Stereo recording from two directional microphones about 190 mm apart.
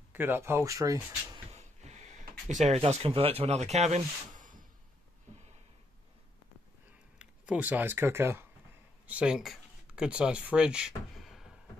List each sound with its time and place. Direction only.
0.1 s speech: 10° right (ahead or behind)
1.5 s a sound: 35° right (ahead or behind)
2.5 s speech: 35° right (ahead or behind)
7.2 s speech: 5° right (ahead or behind)